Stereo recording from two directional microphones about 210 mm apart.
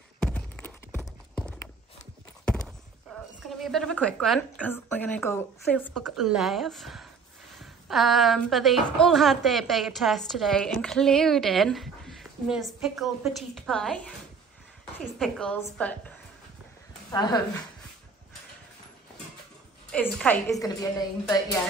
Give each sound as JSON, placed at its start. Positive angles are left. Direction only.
{"t": 0.2, "sound": "clip-clop", "side_deg": 5}
{"t": 3.1, "sound": "a sound", "side_deg": 5}
{"t": 3.4, "sound": "a woman's voice", "side_deg": 0}
{"t": 17.1, "sound": "a woman's voice", "side_deg": 20}
{"t": 19.9, "sound": "a woman's voice", "side_deg": 5}